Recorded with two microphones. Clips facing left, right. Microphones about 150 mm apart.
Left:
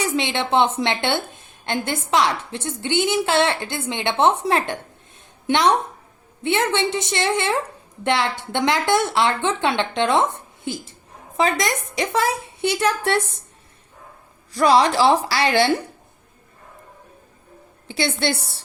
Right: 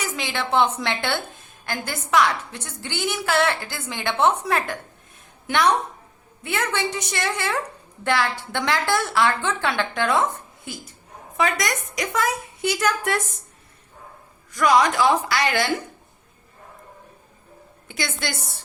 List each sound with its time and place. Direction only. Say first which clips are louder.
0.0 s a woman's voice: left 5 dB; 25° left (ahead or behind)
14.5 s a woman's voice: left 2 dB; 30° left (ahead or behind)
17.8 s a woman's voice: left 7 dB; 30° left (ahead or behind)